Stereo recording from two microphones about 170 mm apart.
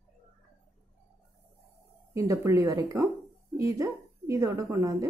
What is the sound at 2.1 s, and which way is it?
Speech, 20° right (ahead or behind).